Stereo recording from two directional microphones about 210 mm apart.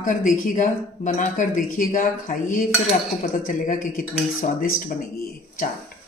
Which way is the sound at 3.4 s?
40° left (ahead or behind).